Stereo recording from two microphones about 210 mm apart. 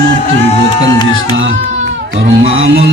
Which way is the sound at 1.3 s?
70° right (ahead or behind).